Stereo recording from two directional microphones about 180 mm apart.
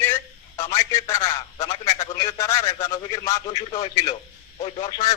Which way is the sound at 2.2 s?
15° left (ahead or behind).